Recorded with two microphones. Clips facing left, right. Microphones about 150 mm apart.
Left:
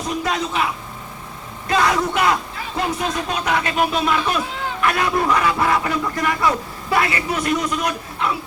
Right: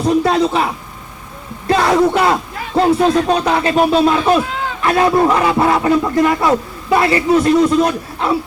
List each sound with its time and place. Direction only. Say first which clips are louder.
0.2 s a man's voice: right 8 dB; 35° right (ahead or behind)